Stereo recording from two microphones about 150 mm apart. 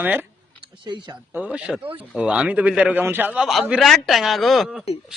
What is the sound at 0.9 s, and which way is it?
Speech, 25° right (ahead or behind).